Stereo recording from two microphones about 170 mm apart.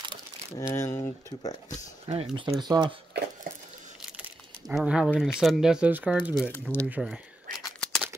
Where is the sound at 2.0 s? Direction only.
40° right (ahead or behind).